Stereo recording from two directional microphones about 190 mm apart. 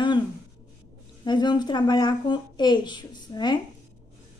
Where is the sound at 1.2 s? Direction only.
25° left (ahead or behind).